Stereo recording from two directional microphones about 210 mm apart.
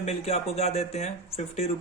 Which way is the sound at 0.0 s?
30° left (ahead or behind).